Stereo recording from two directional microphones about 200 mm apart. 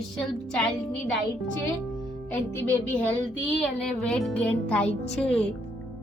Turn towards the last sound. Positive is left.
turn(degrees=5)  # may be behind; listen again after turning